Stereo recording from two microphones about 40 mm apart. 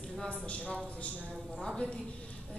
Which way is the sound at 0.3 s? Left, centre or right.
Left.